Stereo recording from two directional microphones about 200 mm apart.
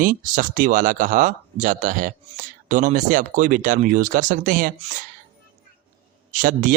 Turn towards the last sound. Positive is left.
turn(degrees=-40)  # may be behind; listen again after turning